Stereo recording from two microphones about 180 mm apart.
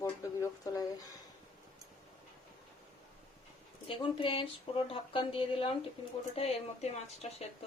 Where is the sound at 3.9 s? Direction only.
30° left (ahead or behind).